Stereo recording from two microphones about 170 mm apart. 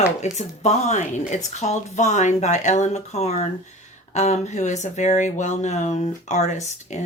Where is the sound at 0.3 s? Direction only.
40° left (ahead or behind).